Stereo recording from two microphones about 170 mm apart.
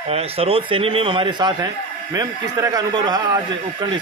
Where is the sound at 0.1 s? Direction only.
35° right (ahead or behind).